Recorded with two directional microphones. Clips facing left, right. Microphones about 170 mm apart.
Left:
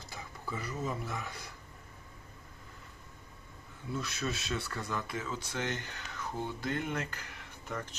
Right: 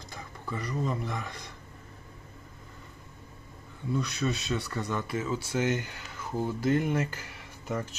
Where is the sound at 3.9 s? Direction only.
Centre (ahead or behind).